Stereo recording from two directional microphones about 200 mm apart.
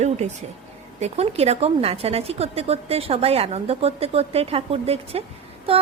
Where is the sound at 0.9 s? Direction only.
35° right (ahead or behind).